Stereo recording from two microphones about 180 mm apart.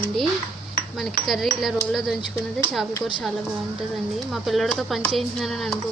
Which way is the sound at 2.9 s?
20° left (ahead or behind).